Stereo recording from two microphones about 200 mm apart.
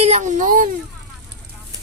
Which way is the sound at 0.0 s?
35° right (ahead or behind).